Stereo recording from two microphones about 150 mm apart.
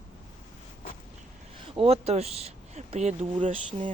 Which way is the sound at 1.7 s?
40° right (ahead or behind).